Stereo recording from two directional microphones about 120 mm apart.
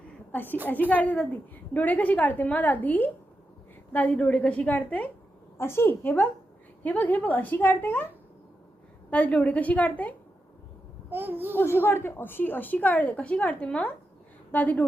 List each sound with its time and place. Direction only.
0.3 s a woman's voice: 15° left (ahead or behind)
9.0 s a woman's voice: 10° left (ahead or behind)
11.1 s a child's voice: 15° right (ahead or behind)
11.5 s a woman's voice: 20° left (ahead or behind)